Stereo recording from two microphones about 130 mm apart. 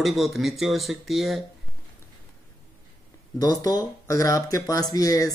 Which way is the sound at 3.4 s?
30° left (ahead or behind).